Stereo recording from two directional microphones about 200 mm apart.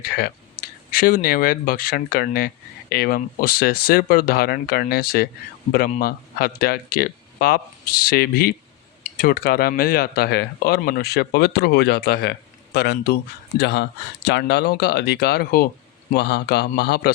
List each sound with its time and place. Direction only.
0.0 s speech: 50° left (ahead or behind)